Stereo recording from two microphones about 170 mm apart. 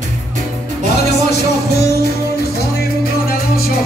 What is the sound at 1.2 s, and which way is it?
Music, 70° left (ahead or behind).